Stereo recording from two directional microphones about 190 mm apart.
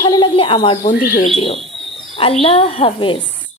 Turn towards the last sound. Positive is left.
turn(degrees=25)  # may be behind; listen again after turning